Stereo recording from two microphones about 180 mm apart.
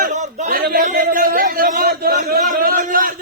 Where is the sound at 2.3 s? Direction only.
50° right (ahead or behind).